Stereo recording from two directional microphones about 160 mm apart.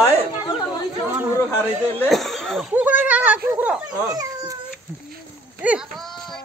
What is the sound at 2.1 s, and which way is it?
Speech, centre (ahead or behind).